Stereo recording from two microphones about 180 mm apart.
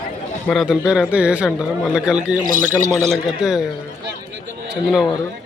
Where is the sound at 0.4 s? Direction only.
Centre (ahead or behind).